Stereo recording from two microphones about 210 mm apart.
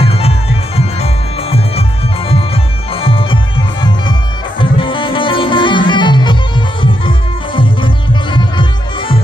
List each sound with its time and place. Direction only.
0.0 s music: 30° left (ahead or behind)